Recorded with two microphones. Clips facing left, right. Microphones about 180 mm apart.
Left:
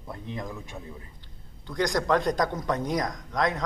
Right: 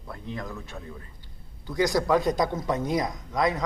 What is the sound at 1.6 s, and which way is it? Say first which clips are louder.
Speech: right 2 dB; 5° right (ahead or behind).